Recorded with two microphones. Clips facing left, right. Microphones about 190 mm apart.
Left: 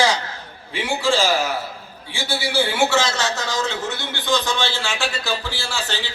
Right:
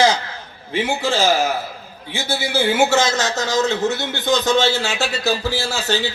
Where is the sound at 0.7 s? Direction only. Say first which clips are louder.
Right 1 dB; 40° right (ahead or behind).